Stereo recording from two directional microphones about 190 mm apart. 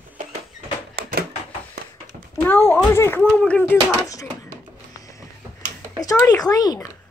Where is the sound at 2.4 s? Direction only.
10° left (ahead or behind).